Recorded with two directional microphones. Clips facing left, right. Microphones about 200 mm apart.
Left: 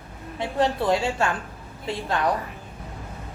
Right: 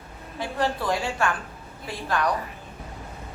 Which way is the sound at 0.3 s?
25° left (ahead or behind).